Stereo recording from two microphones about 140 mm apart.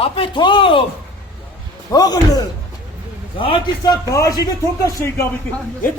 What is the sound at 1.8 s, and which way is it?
A man's voice, 30° left (ahead or behind).